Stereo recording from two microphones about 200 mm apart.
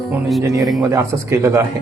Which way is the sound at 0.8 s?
15° right (ahead or behind).